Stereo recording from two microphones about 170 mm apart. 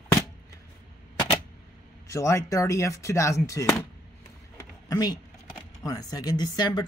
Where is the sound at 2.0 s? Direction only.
15° left (ahead or behind).